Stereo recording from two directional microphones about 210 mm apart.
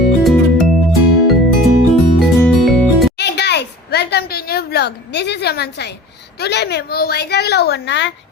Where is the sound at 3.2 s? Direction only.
55° left (ahead or behind).